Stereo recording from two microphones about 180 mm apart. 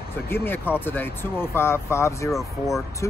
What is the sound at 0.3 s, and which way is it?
Speech, 10° left (ahead or behind).